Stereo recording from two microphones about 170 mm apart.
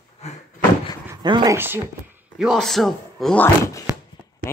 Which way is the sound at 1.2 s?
25° right (ahead or behind).